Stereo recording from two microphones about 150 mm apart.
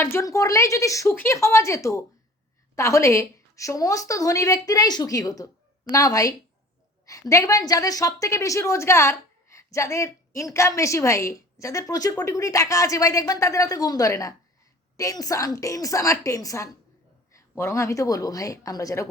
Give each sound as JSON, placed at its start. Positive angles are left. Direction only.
{"t": 0.0, "sound": "a woman's voice", "side_deg": 20}